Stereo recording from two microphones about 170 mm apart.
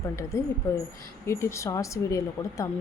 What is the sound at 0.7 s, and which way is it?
Speech, 15° left (ahead or behind).